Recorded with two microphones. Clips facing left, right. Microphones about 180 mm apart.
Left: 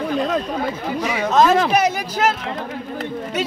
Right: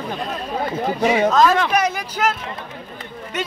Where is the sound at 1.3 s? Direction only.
25° left (ahead or behind).